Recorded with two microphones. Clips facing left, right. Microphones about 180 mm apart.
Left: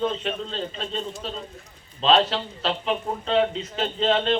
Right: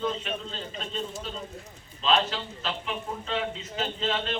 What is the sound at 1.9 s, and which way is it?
Speech, 75° left (ahead or behind).